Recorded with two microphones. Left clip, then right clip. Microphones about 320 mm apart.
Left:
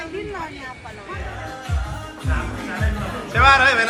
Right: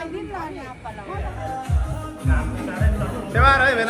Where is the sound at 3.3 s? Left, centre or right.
Centre.